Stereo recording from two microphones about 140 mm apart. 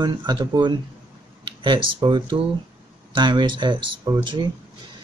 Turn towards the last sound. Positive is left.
turn(degrees=-35)  # may be behind; listen again after turning